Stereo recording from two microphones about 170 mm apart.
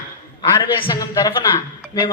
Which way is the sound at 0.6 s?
20° left (ahead or behind).